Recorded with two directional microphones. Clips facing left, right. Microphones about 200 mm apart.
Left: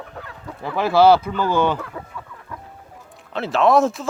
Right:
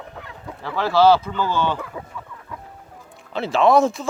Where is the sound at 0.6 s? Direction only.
15° left (ahead or behind).